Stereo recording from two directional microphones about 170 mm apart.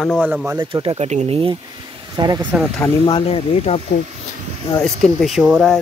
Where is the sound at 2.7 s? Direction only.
15° left (ahead or behind).